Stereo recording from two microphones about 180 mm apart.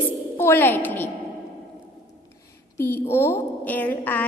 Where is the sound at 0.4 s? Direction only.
10° left (ahead or behind).